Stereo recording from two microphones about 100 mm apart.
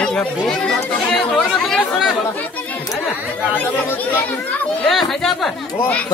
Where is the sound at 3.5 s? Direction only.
20° left (ahead or behind).